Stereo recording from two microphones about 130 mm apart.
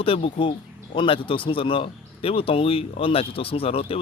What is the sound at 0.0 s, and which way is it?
Speech, 45° left (ahead or behind).